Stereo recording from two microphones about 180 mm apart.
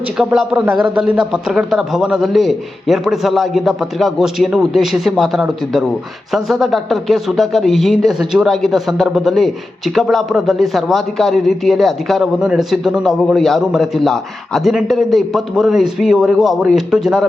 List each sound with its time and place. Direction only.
0.2 s speech: 5° right (ahead or behind)